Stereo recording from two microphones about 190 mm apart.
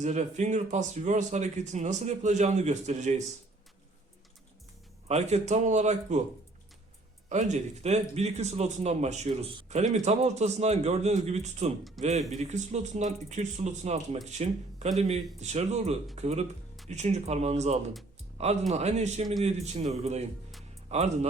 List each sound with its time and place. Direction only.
0.0 s speech: 40° right (ahead or behind)
5.0 s speech: 35° right (ahead or behind)
7.3 s speech: 40° right (ahead or behind)